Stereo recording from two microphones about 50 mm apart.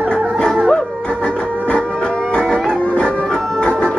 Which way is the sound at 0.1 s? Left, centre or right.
Centre.